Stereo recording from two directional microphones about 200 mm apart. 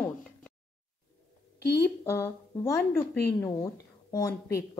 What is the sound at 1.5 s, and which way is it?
Speech, 50° left (ahead or behind).